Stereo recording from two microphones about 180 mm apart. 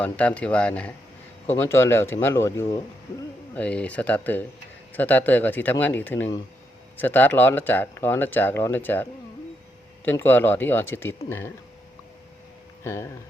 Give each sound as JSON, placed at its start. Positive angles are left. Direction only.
{"t": 0.0, "sound": "speech", "side_deg": 5}
{"t": 12.8, "sound": "speech", "side_deg": 15}